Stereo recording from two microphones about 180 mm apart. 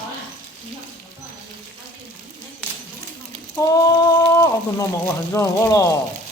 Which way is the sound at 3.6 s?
20° left (ahead or behind).